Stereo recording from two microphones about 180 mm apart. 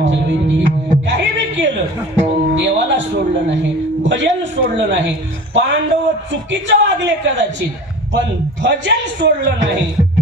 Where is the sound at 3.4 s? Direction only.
80° right.